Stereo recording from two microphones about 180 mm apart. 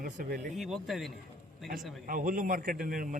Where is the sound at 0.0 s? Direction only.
50° right (ahead or behind).